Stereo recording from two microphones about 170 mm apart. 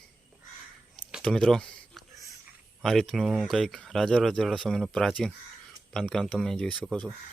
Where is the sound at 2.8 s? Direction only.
Centre (ahead or behind).